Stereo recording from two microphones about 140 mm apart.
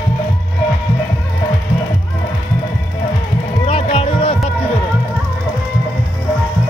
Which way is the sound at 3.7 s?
45° left (ahead or behind).